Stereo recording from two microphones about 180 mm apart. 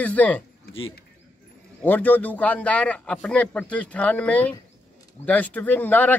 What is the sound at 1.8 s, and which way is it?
A man's voice, 10° left (ahead or behind).